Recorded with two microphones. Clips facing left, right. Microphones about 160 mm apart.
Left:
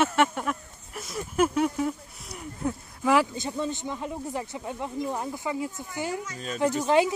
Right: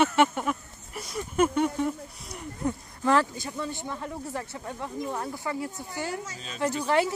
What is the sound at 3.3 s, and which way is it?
Speech, 20° left (ahead or behind).